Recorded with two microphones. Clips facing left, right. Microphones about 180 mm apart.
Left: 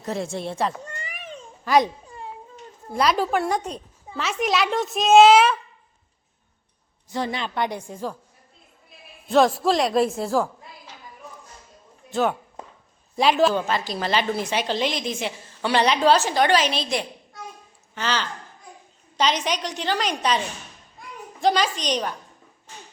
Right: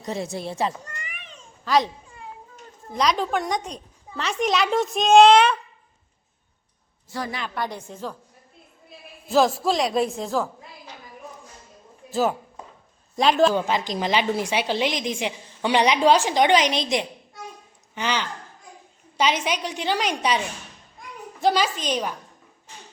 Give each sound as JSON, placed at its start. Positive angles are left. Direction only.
{"t": 0.0, "sound": "a woman's voice", "side_deg": 0}
{"t": 0.9, "sound": "a sound", "side_deg": 30}
{"t": 1.6, "sound": "a child's voice", "side_deg": 15}
{"t": 2.9, "sound": "a woman's voice", "side_deg": 5}
{"t": 7.1, "sound": "a woman's voice", "side_deg": 25}
{"t": 7.7, "sound": "a woman's voice", "side_deg": 10}
{"t": 9.3, "sound": "a woman's voice", "side_deg": 0}
{"t": 12.1, "sound": "a woman's voice", "side_deg": 0}
{"t": 13.5, "sound": "a woman's voice", "side_deg": -15}
{"t": 21.4, "sound": "a woman's voice", "side_deg": -5}